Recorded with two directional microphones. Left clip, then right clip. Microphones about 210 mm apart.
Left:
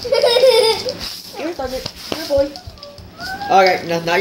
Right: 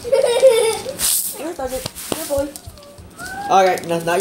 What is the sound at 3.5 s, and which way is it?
Speech, 15° right (ahead or behind).